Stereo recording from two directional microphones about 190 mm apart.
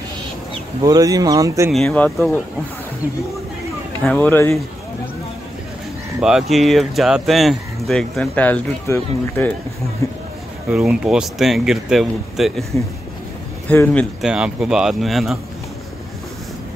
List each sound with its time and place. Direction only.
0.8 s speech: 20° right (ahead or behind)
1.7 s speech: centre (ahead or behind)
4.0 s speech: 5° left (ahead or behind)
6.2 s speech: centre (ahead or behind)
10.7 s speech: 5° right (ahead or behind)
13.7 s speech: 10° left (ahead or behind)
14.2 s speech: 5° right (ahead or behind)